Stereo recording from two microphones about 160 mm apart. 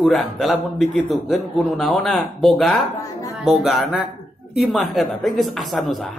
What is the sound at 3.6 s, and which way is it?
A man's voice, 5° right (ahead or behind).